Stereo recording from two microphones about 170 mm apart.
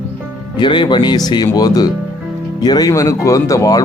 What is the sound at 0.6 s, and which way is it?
Speech, 25° left (ahead or behind).